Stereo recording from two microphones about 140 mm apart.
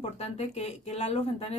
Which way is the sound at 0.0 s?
50° left (ahead or behind).